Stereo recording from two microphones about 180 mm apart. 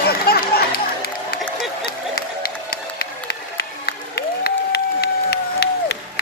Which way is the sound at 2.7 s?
60° left (ahead or behind).